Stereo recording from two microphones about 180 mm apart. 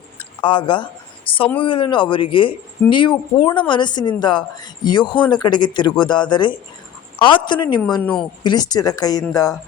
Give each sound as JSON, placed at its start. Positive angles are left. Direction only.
{"t": 0.2, "sound": "a sound", "side_deg": 25}
{"t": 1.5, "sound": "speech", "side_deg": 30}
{"t": 8.0, "sound": "a woman's voice", "side_deg": 5}
{"t": 8.4, "sound": "speech", "side_deg": 20}